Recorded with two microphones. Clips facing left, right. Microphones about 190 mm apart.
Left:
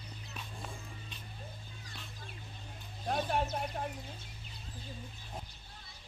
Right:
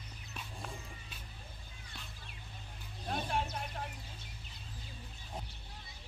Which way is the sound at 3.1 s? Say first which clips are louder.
Left 4 dB; 45° left (ahead or behind).